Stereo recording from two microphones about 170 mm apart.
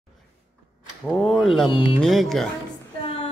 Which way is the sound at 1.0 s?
5° left (ahead or behind).